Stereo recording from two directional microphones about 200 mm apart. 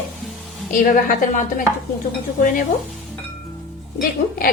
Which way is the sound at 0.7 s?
40° left (ahead or behind).